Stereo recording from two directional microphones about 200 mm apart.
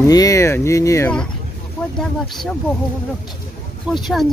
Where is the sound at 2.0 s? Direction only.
Centre (ahead or behind).